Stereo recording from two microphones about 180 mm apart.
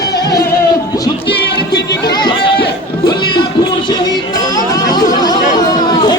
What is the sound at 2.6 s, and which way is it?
Music, 65° left (ahead or behind).